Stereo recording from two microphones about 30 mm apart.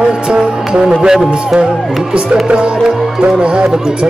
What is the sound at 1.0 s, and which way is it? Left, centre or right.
Speech, centre.